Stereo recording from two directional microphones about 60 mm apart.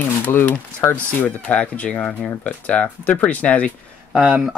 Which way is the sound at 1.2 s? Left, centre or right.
Left.